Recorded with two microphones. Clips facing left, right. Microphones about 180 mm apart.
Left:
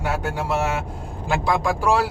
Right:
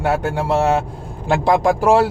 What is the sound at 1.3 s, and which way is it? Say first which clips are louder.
Speech: right 6 dB; 50° right (ahead or behind).